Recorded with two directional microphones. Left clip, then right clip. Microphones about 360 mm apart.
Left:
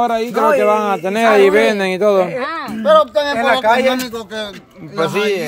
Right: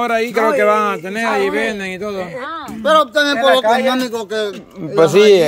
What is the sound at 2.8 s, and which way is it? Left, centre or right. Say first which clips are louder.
Speech: left 1 dB; right.